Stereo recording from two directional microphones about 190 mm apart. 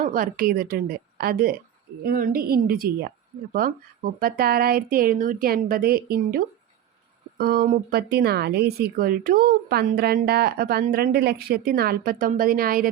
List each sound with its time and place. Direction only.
0.0 s speech: 45° right (ahead or behind)
4.2 s speech: 50° right (ahead or behind)